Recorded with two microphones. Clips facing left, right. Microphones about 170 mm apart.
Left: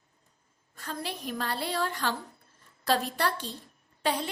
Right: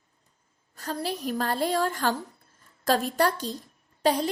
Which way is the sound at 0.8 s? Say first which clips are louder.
Right 6 dB; 40° right (ahead or behind).